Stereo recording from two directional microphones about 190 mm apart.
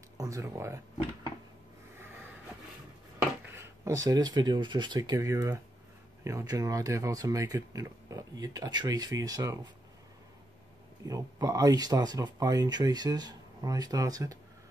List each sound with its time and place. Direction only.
0.2 s speech: 15° right (ahead or behind)
3.4 s speech: 15° right (ahead or behind)
11.1 s speech: 20° right (ahead or behind)